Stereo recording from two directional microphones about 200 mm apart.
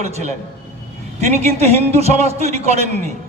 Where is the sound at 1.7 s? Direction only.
30° right (ahead or behind).